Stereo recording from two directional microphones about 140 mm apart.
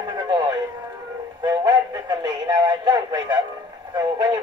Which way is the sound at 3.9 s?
35° right (ahead or behind).